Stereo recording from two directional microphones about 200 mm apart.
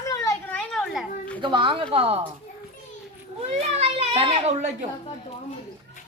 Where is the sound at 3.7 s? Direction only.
30° right (ahead or behind).